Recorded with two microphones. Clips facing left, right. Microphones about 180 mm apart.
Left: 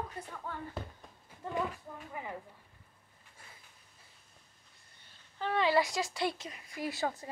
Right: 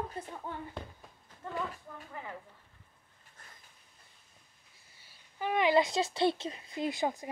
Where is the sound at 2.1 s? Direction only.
15° left (ahead or behind).